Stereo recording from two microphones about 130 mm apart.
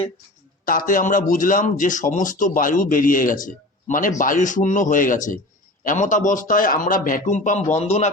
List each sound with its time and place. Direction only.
0.6 s a man's voice: 90° left; by 8.1 s 55° left (ahead or behind)